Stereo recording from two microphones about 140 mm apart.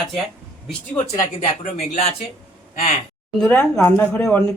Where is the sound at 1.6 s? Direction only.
55° left (ahead or behind).